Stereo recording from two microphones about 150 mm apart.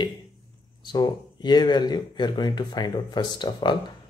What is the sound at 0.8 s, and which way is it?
Speech, 30° left (ahead or behind).